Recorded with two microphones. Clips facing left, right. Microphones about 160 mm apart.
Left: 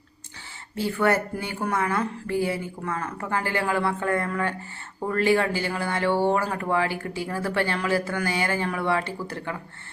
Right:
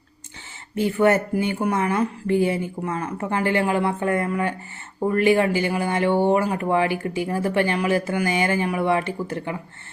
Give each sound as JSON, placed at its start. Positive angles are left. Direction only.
{"t": 0.8, "sound": "speech", "side_deg": -20}